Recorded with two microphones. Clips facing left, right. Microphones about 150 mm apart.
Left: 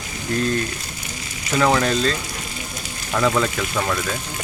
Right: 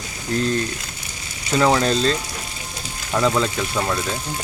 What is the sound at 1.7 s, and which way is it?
Speech, 25° right (ahead or behind).